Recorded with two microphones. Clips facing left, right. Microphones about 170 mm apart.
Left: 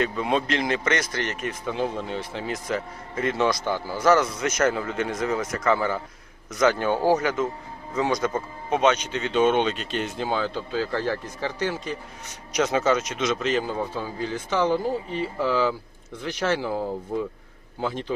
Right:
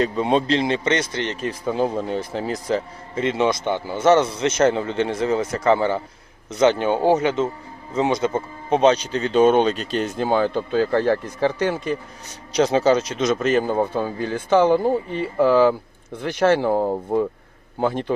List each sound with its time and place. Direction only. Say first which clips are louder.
0.0 s speech: right 5 dB; 30° right (ahead or behind); by 11.9 s 55° right (ahead or behind)
12.5 s a man's voice: right 5 dB; 30° right (ahead or behind); by 18.0 s 55° right (ahead or behind)